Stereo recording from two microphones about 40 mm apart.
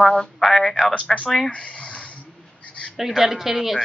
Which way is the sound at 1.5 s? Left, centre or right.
Left.